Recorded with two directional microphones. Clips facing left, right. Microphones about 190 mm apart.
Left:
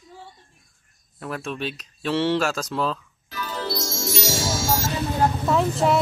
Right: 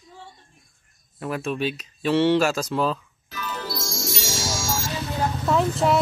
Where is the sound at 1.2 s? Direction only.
5° right (ahead or behind).